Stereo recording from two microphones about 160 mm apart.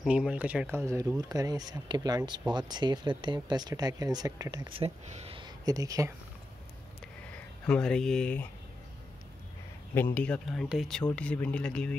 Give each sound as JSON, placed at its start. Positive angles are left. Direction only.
{"t": 0.0, "sound": "speech", "side_deg": -5}
{"t": 7.6, "sound": "speech", "side_deg": 5}
{"t": 9.9, "sound": "speech", "side_deg": 10}